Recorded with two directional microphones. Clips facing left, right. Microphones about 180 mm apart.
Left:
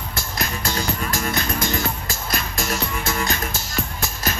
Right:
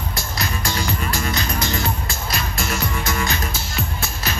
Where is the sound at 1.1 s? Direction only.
50° left (ahead or behind).